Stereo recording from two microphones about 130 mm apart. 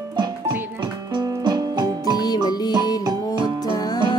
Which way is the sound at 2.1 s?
30° left (ahead or behind).